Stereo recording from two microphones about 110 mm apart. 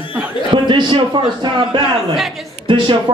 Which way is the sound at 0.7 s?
45° right (ahead or behind).